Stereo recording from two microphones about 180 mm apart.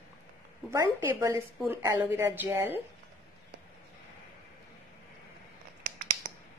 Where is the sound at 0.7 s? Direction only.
15° right (ahead or behind).